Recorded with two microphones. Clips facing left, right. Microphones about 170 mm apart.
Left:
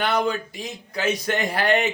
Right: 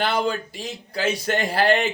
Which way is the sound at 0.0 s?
30° right (ahead or behind).